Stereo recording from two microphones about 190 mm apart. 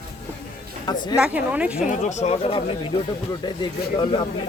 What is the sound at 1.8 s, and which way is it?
Speech, 40° left (ahead or behind).